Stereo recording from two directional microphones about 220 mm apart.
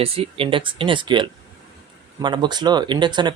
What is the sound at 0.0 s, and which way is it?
Speech, 25° right (ahead or behind).